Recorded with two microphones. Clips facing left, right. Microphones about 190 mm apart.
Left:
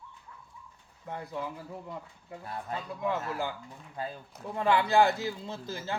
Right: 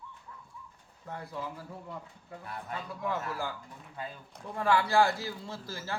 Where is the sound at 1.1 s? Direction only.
20° left (ahead or behind).